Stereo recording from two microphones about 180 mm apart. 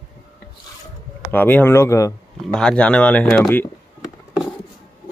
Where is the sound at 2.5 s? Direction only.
5° left (ahead or behind).